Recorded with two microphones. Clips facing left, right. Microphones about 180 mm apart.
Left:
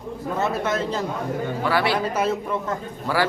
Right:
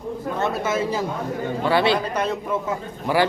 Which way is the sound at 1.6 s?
25° right (ahead or behind).